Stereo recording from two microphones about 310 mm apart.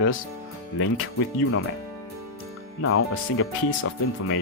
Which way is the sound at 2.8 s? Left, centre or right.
Left.